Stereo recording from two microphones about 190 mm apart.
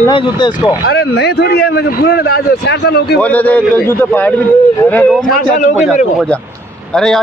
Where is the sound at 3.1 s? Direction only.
10° left (ahead or behind).